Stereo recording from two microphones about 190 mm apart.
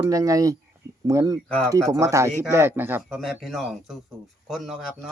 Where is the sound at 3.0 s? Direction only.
Centre (ahead or behind).